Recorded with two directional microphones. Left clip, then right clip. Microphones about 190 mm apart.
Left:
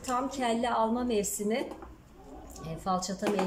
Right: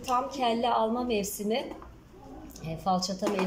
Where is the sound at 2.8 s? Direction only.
5° right (ahead or behind).